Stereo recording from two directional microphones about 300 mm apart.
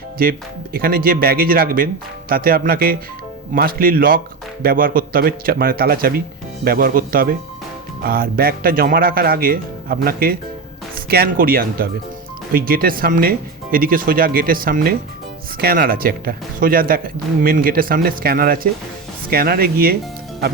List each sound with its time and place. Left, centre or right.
0.2 s speech: right